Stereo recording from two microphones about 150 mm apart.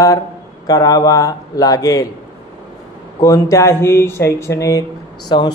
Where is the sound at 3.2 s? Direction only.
20° left (ahead or behind).